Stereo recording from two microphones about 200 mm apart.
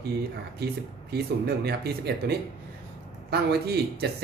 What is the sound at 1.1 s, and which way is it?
Speech, 55° right (ahead or behind).